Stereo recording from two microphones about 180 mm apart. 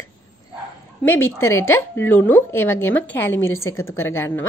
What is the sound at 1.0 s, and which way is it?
A woman's voice, 15° left (ahead or behind).